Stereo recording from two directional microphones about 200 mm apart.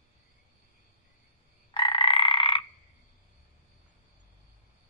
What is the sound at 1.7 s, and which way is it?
Croak, 25° left (ahead or behind).